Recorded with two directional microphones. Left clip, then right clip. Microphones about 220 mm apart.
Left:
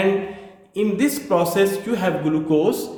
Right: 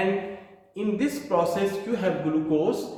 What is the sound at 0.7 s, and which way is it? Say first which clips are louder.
Speech: left 7 dB; 50° left (ahead or behind).